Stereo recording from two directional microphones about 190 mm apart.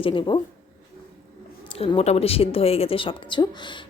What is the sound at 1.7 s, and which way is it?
A woman's voice, 30° left (ahead or behind).